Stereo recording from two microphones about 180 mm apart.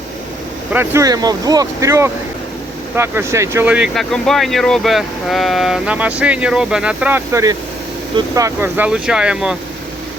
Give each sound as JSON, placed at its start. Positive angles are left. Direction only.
{"t": 0.7, "sound": "speech", "side_deg": -15}